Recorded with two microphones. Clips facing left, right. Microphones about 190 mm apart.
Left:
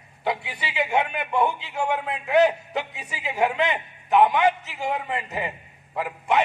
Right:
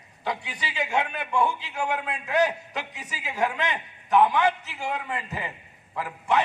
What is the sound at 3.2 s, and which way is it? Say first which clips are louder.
A man's voice: left 4 dB; 20° left (ahead or behind).